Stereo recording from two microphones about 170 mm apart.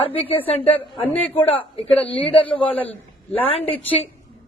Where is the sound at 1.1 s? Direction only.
10° left (ahead or behind).